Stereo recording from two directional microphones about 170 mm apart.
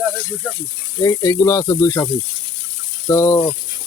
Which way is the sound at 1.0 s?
20° left (ahead or behind).